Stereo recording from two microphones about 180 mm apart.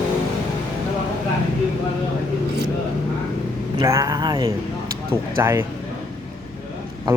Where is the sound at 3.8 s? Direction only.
15° right (ahead or behind).